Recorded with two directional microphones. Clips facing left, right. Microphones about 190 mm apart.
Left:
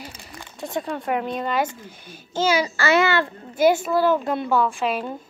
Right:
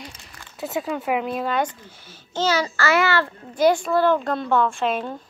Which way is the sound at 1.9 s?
15° left (ahead or behind).